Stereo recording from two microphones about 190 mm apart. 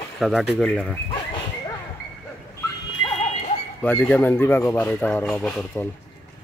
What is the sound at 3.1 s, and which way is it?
Music, 35° left (ahead or behind).